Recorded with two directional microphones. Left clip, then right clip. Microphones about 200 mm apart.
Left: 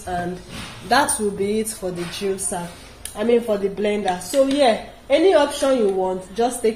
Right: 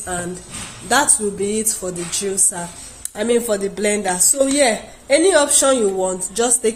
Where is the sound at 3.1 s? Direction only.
50° right (ahead or behind).